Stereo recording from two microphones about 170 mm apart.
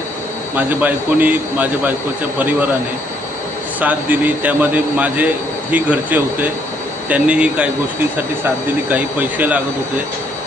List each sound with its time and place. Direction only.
0.5 s a man's voice: 10° right (ahead or behind)
3.8 s a man's voice: 10° right (ahead or behind)
8.9 s a man's voice: 10° right (ahead or behind)